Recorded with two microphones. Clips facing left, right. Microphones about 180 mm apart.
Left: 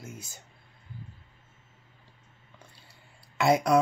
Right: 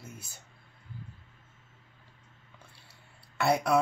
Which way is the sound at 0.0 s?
85° left.